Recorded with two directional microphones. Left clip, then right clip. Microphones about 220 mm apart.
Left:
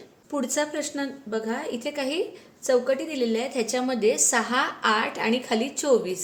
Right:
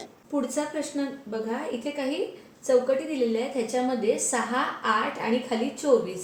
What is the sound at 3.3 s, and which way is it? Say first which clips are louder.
A woman's voice: left 1 dB; 50° left (ahead or behind).